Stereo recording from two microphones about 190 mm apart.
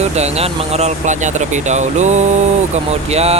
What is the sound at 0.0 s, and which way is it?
Speech, 35° right (ahead or behind).